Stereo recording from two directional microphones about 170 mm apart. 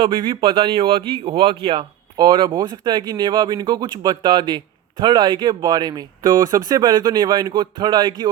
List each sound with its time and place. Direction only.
0.0 s speech: 30° right (ahead or behind)